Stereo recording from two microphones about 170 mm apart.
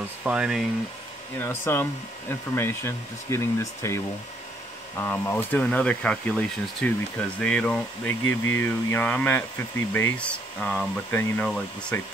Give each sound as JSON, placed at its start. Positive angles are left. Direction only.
{"t": 0.2, "sound": "speech", "side_deg": -5}
{"t": 1.4, "sound": "speech", "side_deg": 15}
{"t": 5.0, "sound": "speech", "side_deg": 10}